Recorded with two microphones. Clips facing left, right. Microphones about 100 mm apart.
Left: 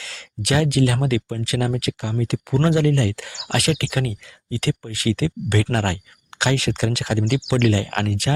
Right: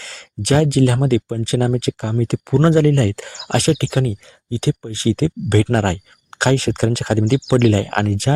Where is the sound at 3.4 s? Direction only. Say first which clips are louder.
Right 5 dB; 30° right (ahead or behind).